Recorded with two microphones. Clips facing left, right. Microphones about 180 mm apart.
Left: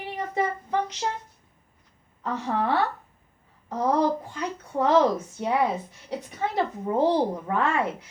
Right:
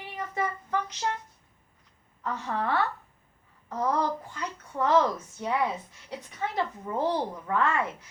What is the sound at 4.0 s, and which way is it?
A woman's voice, 20° left (ahead or behind).